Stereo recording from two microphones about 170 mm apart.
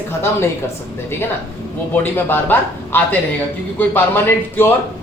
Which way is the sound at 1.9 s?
10° left (ahead or behind).